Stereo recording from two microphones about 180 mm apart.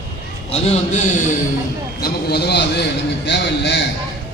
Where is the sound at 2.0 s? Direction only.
65° left (ahead or behind).